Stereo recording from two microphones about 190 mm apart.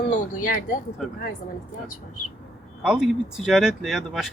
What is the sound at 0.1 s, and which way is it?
Speech, 45° left (ahead or behind).